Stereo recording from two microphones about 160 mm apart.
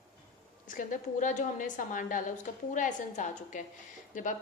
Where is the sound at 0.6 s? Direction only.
55° left (ahead or behind).